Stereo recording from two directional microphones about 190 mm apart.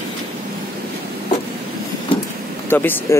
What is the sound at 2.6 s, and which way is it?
Speech, 10° left (ahead or behind).